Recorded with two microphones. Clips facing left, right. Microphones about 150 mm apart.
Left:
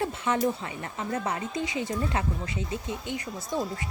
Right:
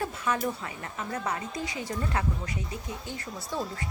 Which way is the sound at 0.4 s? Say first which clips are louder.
Left 4 dB; 25° left (ahead or behind).